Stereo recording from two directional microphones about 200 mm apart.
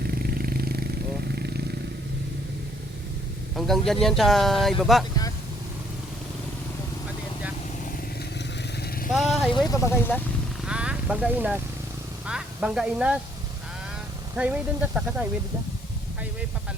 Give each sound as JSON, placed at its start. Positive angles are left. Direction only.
{"t": 0.1, "sound": "vehicle", "side_deg": -50}
{"t": 3.5, "sound": "speech", "side_deg": 0}
{"t": 9.1, "sound": "vehicle", "side_deg": 0}
{"t": 9.6, "sound": "speech", "side_deg": 15}
{"t": 10.7, "sound": "vehicle", "side_deg": -5}
{"t": 12.2, "sound": "speech", "side_deg": -5}
{"t": 14.3, "sound": "speech", "side_deg": -5}